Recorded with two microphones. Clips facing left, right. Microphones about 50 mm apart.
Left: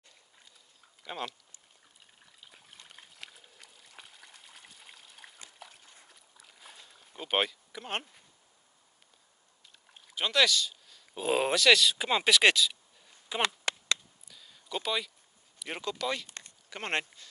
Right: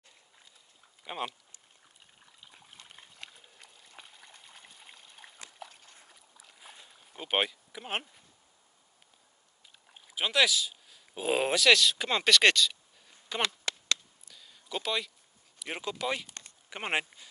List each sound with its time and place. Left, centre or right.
1.0 s speech: centre
2.4 s dog: centre
5.9 s boat: centre
9.8 s speech: centre
13.7 s a sound: left
14.2 s a sound: centre
15.6 s speech: centre